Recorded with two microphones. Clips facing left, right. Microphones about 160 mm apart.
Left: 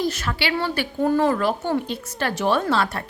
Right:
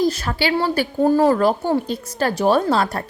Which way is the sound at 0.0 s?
35° right (ahead or behind).